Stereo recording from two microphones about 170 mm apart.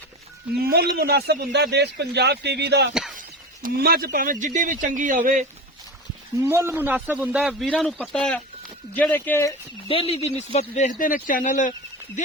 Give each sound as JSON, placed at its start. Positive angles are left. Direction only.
{"t": 0.6, "sound": "speech", "side_deg": -70}
{"t": 2.9, "sound": "a sound", "side_deg": 0}
{"t": 3.2, "sound": "speech", "side_deg": -60}
{"t": 6.4, "sound": "a man's voice", "side_deg": -15}
{"t": 9.9, "sound": "speech", "side_deg": 35}